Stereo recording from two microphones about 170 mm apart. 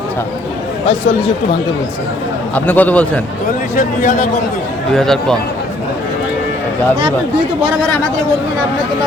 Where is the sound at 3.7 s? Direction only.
50° left (ahead or behind).